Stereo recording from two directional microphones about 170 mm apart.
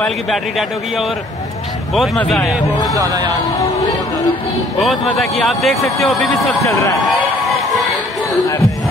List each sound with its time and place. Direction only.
0.0 s a man's voice: centre (ahead or behind)
4.7 s a man's voice: centre (ahead or behind)
6.6 s speech: 20° left (ahead or behind)